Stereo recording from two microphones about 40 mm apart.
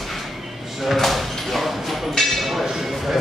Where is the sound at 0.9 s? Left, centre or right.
Centre.